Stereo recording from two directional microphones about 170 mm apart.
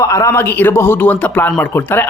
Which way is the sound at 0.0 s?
20° left (ahead or behind).